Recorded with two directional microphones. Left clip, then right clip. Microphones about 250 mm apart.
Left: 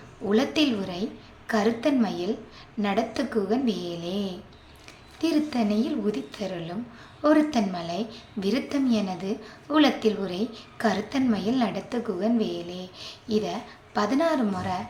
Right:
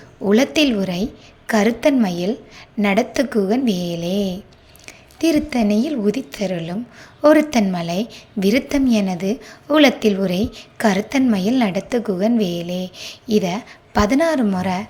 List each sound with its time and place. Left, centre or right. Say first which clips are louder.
0.3 s a woman's voice: right 8 dB; right